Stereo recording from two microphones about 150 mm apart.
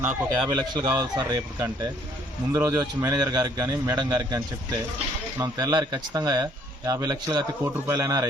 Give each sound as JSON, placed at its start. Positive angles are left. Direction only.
{"t": 0.0, "sound": "speech", "side_deg": -10}
{"t": 0.5, "sound": "a man's voice", "side_deg": -30}
{"t": 5.4, "sound": "a man's voice", "side_deg": -25}